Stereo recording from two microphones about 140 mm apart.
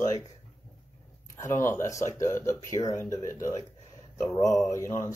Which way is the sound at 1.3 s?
20° left (ahead or behind).